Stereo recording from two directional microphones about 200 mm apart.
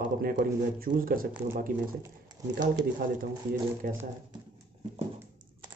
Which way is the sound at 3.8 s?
45° right (ahead or behind).